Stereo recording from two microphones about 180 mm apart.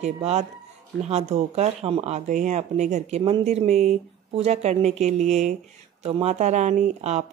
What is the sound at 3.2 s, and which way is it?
Speech, 25° right (ahead or behind).